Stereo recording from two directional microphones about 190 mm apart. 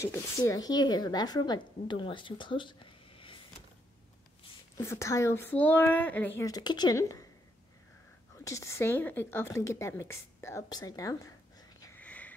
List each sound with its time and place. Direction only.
0.0 s speech: 15° left (ahead or behind)
4.7 s speech: 15° left (ahead or behind)
8.5 s speech: 15° left (ahead or behind)
11.8 s sniff: 10° left (ahead or behind)